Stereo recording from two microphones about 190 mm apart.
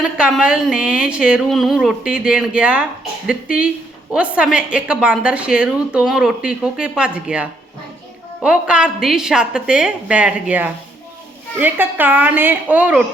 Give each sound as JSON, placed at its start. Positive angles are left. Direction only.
{"t": 0.0, "sound": "a woman's voice", "side_deg": -5}